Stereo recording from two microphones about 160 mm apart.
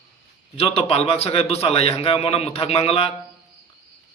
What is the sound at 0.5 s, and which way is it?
A man's voice, 40° left (ahead or behind).